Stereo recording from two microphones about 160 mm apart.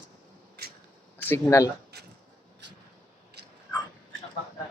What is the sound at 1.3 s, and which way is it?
Speech, 20° left (ahead or behind).